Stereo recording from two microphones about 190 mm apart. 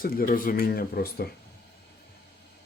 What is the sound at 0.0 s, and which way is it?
Speech, 50° left (ahead or behind).